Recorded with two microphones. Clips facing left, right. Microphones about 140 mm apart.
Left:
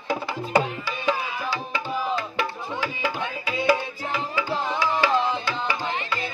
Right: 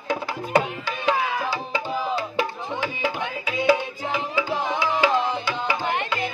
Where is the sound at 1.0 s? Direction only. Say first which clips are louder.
Right 3 dB; 80° right.